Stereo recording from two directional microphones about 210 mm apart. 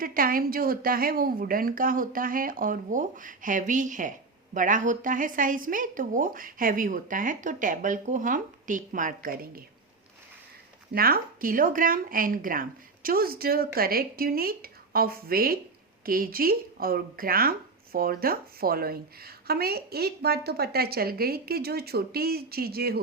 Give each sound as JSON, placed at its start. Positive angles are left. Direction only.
{"t": 0.0, "sound": "a woman's voice", "side_deg": -45}
{"t": 10.9, "sound": "a woman's voice", "side_deg": -45}